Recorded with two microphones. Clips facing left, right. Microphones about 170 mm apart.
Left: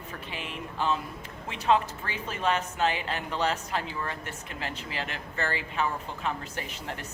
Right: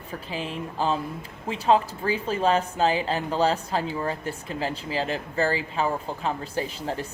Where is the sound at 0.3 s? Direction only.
35° right (ahead or behind).